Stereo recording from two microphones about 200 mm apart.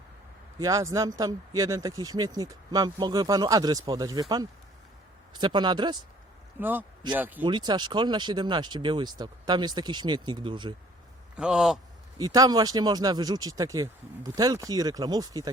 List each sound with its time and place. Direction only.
0.6 s speech: 15° right (ahead or behind)
6.6 s a man's voice: 10° right (ahead or behind)
7.4 s speech: 25° right (ahead or behind)
11.3 s a man's voice: 5° right (ahead or behind)
12.1 s speech: 20° right (ahead or behind)